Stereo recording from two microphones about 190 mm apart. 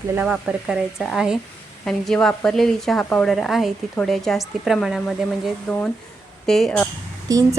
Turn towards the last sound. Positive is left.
turn(degrees=-20)  # may be behind; listen again after turning